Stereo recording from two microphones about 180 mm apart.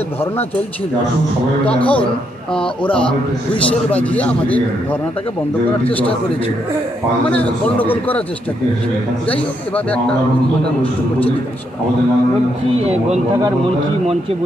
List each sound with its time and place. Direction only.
1.7 s a man's voice: 5° left (ahead or behind)
7.7 s a man's voice: 10° left (ahead or behind)